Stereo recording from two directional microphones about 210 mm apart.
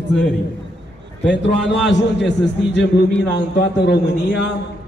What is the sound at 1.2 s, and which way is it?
A man's voice, 55° left (ahead or behind).